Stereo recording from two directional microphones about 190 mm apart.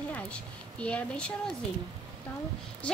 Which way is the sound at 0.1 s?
5° left (ahead or behind).